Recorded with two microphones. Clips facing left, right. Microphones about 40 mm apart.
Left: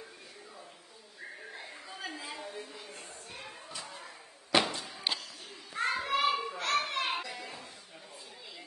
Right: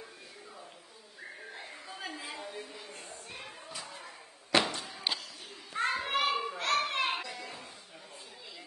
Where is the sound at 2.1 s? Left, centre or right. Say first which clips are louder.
Even; centre.